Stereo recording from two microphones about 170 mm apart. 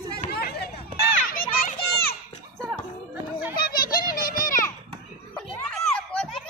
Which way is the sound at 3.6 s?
60° left (ahead or behind).